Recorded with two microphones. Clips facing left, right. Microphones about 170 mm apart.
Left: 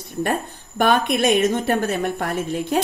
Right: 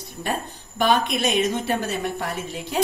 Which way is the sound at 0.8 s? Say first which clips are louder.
Left 3 dB; 55° left (ahead or behind).